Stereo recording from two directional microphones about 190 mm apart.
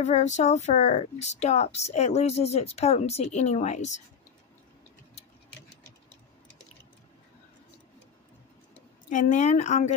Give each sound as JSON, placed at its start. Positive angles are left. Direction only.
{"t": 0.0, "sound": "speech", "side_deg": 40}
{"t": 9.1, "sound": "speech", "side_deg": 40}